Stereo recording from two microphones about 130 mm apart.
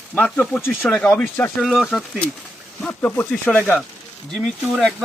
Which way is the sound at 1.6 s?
Centre (ahead or behind).